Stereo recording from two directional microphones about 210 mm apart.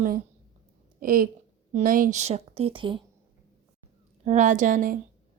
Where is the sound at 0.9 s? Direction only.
45° right (ahead or behind); by 3.0 s 25° right (ahead or behind).